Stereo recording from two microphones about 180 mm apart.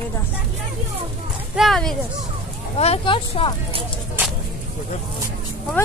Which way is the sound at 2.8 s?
30° left (ahead or behind).